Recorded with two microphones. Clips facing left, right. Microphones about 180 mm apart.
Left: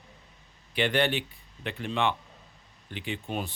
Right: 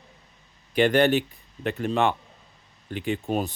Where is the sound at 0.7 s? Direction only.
45° right (ahead or behind).